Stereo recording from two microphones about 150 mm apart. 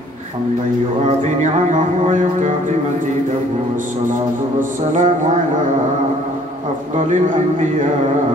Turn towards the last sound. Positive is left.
turn(degrees=-55)  # may be behind; listen again after turning